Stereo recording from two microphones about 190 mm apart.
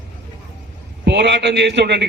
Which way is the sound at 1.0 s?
65° right (ahead or behind).